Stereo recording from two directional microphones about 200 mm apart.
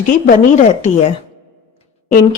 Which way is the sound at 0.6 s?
35° left (ahead or behind).